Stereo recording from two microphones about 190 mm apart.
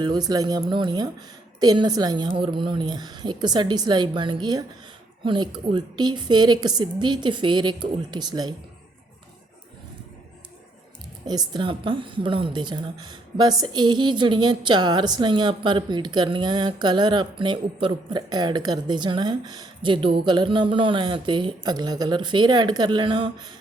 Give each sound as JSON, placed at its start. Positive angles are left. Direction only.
{"t": 0.0, "sound": "a woman's voice", "side_deg": -20}
{"t": 11.3, "sound": "a woman's voice", "side_deg": -25}